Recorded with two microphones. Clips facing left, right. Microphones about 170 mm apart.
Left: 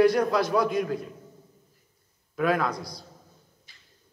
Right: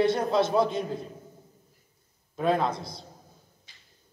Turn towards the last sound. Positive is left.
turn(degrees=-25)  # may be behind; listen again after turning